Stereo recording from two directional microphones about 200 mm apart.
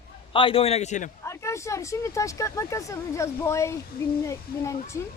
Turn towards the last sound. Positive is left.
turn(degrees=15)  # may be behind; listen again after turning